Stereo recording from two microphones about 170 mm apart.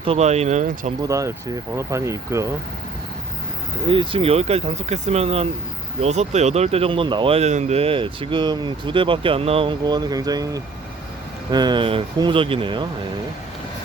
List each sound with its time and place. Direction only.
0.0 s speech: 35° right (ahead or behind)
1.0 s speech: 20° right (ahead or behind)
3.8 s speech: 30° right (ahead or behind)